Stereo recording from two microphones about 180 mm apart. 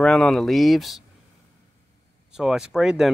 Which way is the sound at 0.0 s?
Centre (ahead or behind).